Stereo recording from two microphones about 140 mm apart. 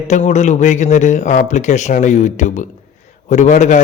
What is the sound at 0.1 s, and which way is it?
A man's voice, 55° left (ahead or behind).